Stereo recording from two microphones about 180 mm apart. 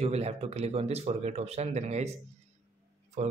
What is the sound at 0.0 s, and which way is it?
Speech, 35° right (ahead or behind).